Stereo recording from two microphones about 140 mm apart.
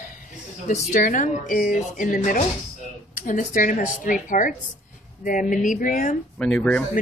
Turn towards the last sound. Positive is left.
turn(degrees=5)  # may be behind; listen again after turning